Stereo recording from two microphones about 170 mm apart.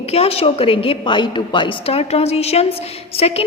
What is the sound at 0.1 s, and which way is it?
A woman's voice, 35° left (ahead or behind).